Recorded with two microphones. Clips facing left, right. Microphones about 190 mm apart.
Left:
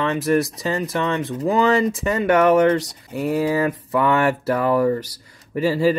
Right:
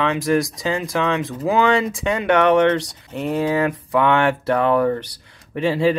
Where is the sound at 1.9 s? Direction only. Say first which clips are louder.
Even; 5° left (ahead or behind).